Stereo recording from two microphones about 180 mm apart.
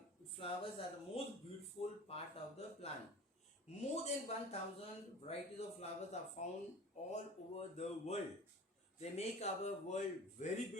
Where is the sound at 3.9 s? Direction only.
35° left (ahead or behind).